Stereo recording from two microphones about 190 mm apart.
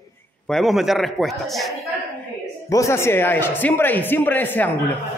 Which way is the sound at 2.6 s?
15° left (ahead or behind).